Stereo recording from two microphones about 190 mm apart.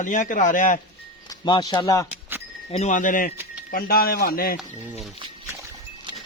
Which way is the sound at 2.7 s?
40° left (ahead or behind).